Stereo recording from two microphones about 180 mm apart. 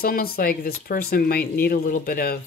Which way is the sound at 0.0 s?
55° left (ahead or behind).